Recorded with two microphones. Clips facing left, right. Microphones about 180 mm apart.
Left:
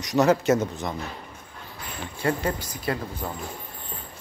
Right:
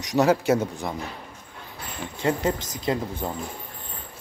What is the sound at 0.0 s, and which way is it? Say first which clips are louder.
Speech: even; 15° right (ahead or behind).